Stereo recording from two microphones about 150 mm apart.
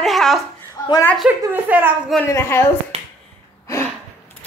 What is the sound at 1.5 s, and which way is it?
Speech, 10° right (ahead or behind).